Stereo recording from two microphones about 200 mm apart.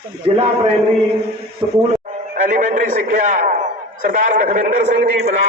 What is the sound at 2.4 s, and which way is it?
A man's voice, 40° right (ahead or behind).